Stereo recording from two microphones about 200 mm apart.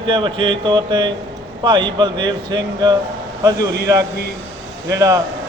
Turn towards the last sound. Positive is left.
turn(degrees=-15)  # may be behind; listen again after turning